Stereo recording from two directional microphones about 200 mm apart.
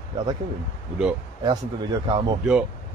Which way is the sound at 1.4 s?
20° right (ahead or behind).